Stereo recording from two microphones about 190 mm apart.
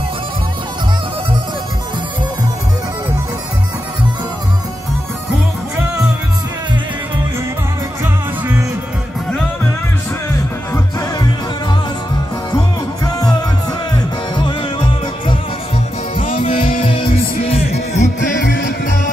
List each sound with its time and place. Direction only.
8.0 s music: 15° right (ahead or behind)
10.7 s music: 15° left (ahead or behind)
13.9 s music: 25° left (ahead or behind)
16.3 s music: 40° left (ahead or behind)
16.9 s music: 30° left (ahead or behind)
18.4 s music: 65° left (ahead or behind)